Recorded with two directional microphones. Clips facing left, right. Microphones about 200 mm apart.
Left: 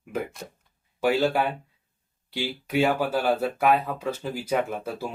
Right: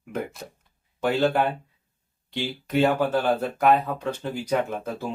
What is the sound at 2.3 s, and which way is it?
Speech, 10° left (ahead or behind).